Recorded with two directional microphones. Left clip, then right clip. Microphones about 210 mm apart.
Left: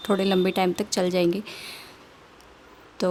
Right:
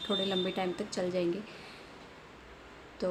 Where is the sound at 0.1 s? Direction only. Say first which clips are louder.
Left 10 dB; 50° left (ahead or behind).